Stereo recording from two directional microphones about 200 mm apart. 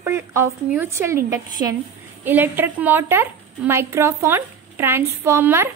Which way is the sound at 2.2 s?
10° right (ahead or behind).